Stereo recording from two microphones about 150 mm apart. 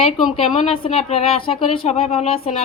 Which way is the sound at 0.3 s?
40° left (ahead or behind).